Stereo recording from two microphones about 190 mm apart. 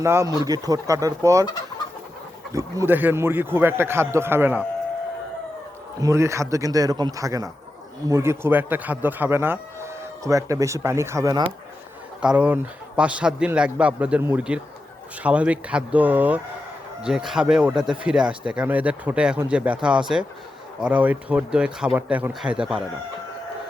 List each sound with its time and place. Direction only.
0.0 s speech: 15° right (ahead or behind)
2.5 s speech: 15° right (ahead or behind)
6.0 s speech: 15° right (ahead or behind)
12.2 s speech: 5° right (ahead or behind)